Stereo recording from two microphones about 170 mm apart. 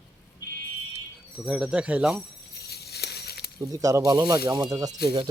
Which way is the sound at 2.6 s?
70° left (ahead or behind).